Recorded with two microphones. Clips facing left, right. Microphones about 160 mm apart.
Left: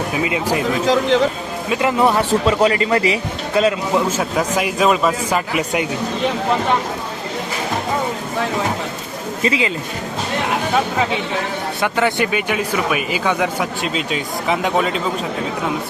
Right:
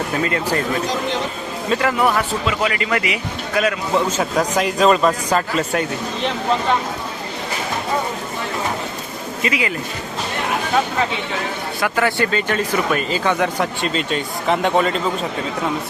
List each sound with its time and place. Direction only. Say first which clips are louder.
0.1 s speech: left 1 dB; 10° left (ahead or behind)
1.7 s a man's voice: left 2 dB; 20° left (ahead or behind)
3.9 s a man's voice: even; 5° left (ahead or behind)
9.4 s a man's voice: left 3 dB; 25° left (ahead or behind)
11.8 s speech: left 1 dB; 20° left (ahead or behind); by 15.0 s 5° left (ahead or behind)